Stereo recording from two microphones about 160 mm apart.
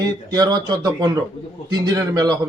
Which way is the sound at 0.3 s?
25° right (ahead or behind).